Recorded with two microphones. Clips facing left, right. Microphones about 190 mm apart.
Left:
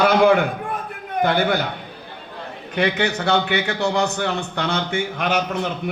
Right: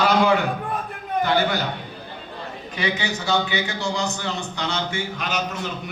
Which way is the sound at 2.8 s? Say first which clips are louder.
Left 6 dB; 60° left (ahead or behind).